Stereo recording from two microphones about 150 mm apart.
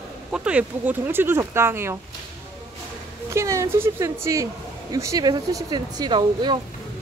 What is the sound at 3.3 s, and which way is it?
Speech, 20° right (ahead or behind).